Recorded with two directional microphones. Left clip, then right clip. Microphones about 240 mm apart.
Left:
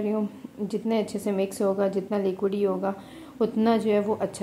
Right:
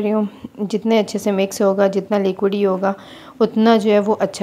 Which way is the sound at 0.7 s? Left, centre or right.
Right.